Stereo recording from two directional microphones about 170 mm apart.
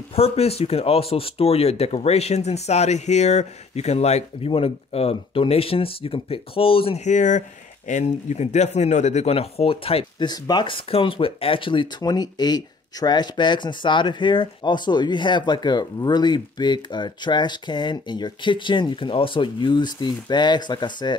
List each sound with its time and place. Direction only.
0.1 s speech: 35° left (ahead or behind)